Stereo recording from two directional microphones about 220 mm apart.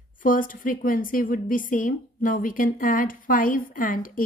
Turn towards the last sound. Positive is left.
turn(degrees=40)  # may be behind; listen again after turning